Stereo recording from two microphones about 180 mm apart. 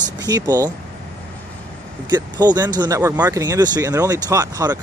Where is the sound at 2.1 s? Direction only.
25° right (ahead or behind).